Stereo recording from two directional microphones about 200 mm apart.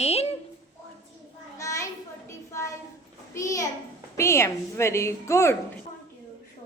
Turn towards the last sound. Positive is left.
turn(degrees=15)  # may be behind; listen again after turning